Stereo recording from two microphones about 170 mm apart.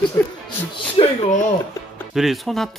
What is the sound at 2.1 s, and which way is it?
Speech, centre (ahead or behind).